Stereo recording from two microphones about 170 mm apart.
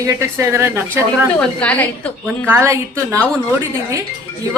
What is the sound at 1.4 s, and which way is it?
Speech, 10° left (ahead or behind).